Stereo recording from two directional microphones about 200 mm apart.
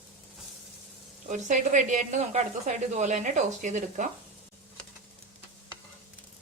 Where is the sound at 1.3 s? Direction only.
40° right (ahead or behind).